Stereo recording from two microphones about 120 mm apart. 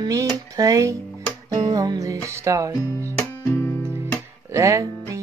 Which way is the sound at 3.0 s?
20° left (ahead or behind).